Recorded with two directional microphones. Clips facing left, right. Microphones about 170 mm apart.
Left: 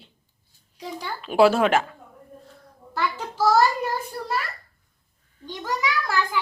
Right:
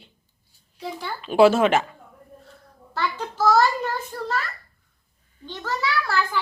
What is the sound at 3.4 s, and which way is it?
Child singing, 10° left (ahead or behind).